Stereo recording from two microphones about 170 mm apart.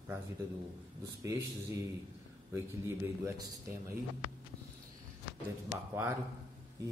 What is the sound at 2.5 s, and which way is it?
Speech, 15° right (ahead or behind).